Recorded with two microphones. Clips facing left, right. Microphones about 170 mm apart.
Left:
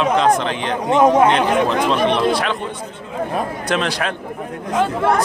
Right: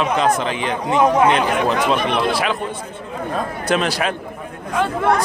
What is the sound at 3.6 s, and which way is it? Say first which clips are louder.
Speech: right 4 dB; 5° right (ahead or behind).